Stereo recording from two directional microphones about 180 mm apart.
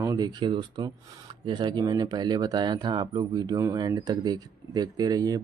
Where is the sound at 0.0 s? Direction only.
20° right (ahead or behind).